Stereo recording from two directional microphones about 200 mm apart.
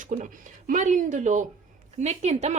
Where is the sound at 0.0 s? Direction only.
40° right (ahead or behind).